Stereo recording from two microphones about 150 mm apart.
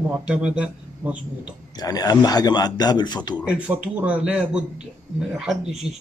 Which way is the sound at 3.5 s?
10° right (ahead or behind).